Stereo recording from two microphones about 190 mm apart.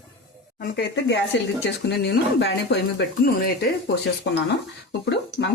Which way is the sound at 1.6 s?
60° left (ahead or behind).